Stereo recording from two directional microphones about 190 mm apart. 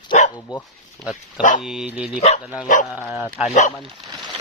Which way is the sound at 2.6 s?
45° left (ahead or behind).